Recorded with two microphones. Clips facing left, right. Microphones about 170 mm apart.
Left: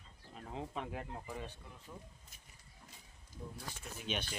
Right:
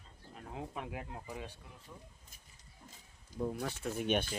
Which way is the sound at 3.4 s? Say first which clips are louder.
Right 12 dB; 70° right (ahead or behind).